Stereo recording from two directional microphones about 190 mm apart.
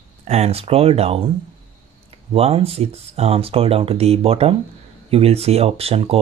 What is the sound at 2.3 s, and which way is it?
Speech, 30° right (ahead or behind).